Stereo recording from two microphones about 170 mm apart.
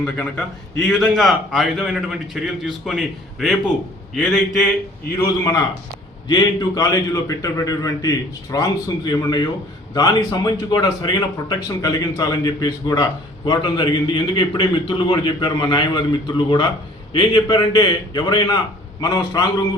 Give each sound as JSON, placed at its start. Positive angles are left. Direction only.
{"t": 0.0, "sound": "a man's voice", "side_deg": 5}
{"t": 5.4, "sound": "a man's voice", "side_deg": 20}